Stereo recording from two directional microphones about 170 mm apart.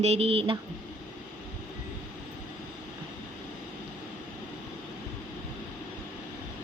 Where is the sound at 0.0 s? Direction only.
35° right (ahead or behind).